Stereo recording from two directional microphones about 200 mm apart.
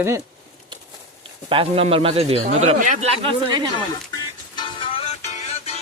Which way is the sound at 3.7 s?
20° left (ahead or behind).